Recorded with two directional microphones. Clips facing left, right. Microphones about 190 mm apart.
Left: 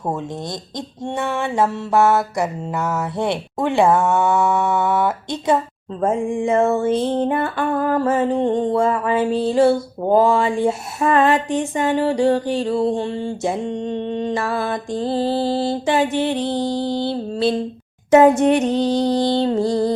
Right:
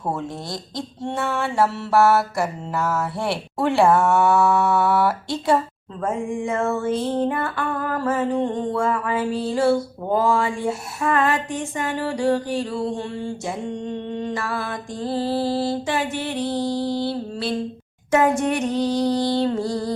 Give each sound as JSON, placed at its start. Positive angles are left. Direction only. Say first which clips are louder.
{"t": 0.8, "sound": "speech", "louder": "left 1 dB", "side_deg": 15}